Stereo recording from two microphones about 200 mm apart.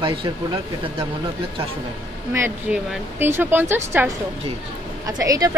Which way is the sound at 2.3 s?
10° right (ahead or behind).